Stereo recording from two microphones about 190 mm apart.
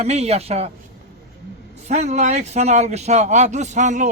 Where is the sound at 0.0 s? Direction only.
35° right (ahead or behind).